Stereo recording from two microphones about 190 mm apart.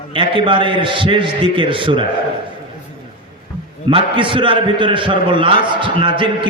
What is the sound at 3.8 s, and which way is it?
A man's voice, 25° right (ahead or behind).